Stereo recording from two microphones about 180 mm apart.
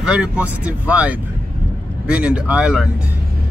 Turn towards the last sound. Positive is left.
turn(degrees=-5)  # may be behind; listen again after turning